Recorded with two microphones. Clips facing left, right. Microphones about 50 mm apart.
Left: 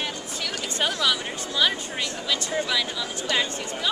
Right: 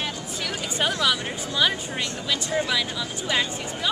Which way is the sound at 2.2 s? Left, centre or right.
Centre.